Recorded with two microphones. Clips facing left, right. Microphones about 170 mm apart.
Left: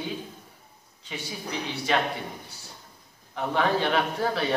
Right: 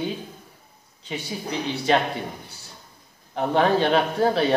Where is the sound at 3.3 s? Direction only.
30° right (ahead or behind).